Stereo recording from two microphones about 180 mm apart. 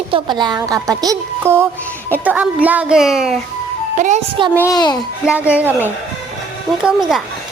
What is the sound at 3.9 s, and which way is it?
Speech, 45° right (ahead or behind).